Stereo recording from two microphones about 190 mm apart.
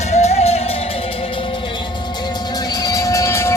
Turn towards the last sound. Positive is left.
turn(degrees=15)  # may be behind; listen again after turning